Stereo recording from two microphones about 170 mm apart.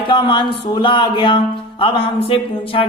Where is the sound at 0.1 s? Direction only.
25° left (ahead or behind).